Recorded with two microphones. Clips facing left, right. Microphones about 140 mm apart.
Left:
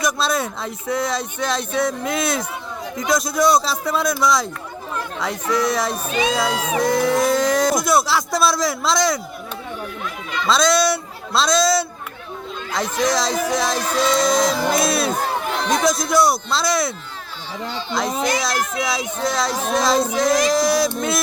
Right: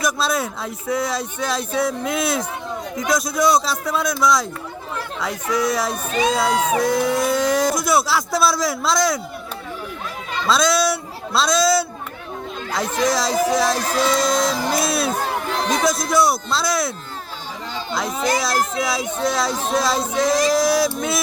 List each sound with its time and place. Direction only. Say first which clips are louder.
0.0 s speech: even; centre (ahead or behind)
6.1 s speech: right 3 dB; 45° right (ahead or behind)
6.3 s speech: right 2 dB; centre (ahead or behind)
10.4 s speech: left 1 dB; 5° right (ahead or behind)
18.5 s speech: right 2 dB; 30° right (ahead or behind)
18.8 s speech: right 1 dB; 5° right (ahead or behind)